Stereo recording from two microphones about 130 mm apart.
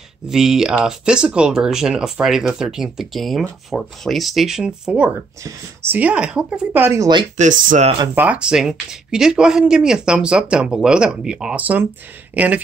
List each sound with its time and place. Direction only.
0.3 s speech: 5° right (ahead or behind)
7.3 s speech: 80° right
8.1 s speech: 10° right (ahead or behind)